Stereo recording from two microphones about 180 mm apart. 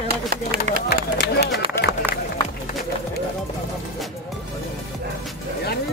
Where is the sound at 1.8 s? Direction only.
15° left (ahead or behind).